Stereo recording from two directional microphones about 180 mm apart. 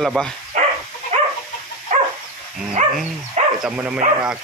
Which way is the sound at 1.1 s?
40° right (ahead or behind).